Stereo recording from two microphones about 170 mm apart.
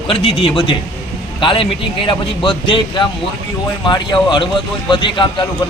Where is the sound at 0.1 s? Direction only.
30° left (ahead or behind).